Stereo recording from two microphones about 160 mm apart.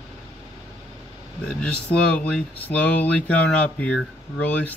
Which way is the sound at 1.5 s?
5° left (ahead or behind).